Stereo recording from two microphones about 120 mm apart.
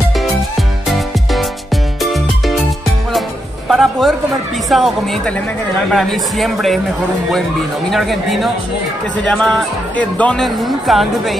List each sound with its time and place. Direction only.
2.0 s music: centre (ahead or behind)
4.6 s speech: centre (ahead or behind)
7.9 s speech: centre (ahead or behind)